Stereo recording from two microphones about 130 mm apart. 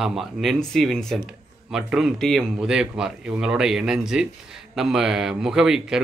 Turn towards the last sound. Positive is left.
turn(degrees=-5)  # may be behind; listen again after turning